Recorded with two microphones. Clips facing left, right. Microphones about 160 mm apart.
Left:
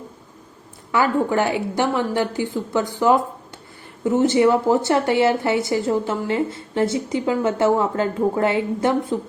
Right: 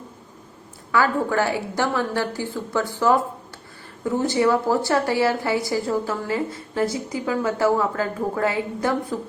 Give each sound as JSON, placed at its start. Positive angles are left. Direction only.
{"t": 0.9, "sound": "a woman's voice", "side_deg": 20}